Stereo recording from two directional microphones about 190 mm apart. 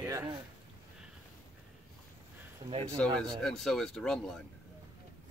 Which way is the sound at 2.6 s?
25° right (ahead or behind).